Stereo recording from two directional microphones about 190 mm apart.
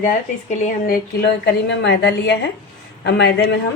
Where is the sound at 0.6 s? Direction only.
50° left (ahead or behind).